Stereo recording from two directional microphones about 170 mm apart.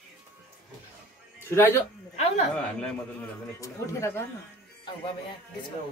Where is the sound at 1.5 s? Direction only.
15° left (ahead or behind).